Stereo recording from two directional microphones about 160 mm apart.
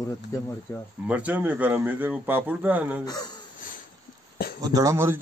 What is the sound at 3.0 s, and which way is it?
Speech, 25° left (ahead or behind).